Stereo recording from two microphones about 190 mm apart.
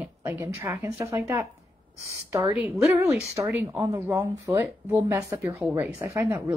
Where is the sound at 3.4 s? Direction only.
10° right (ahead or behind).